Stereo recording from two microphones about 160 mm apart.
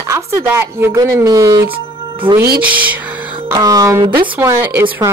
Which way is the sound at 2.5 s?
10° right (ahead or behind).